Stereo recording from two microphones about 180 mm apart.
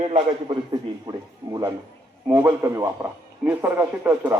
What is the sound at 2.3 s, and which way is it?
A man's voice, 10° right (ahead or behind).